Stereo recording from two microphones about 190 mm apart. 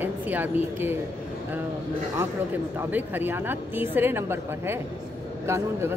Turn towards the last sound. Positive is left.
turn(degrees=-15)  # may be behind; listen again after turning